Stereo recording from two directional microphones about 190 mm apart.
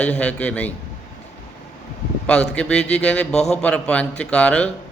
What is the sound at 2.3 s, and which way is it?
A man's voice, 5° left (ahead or behind).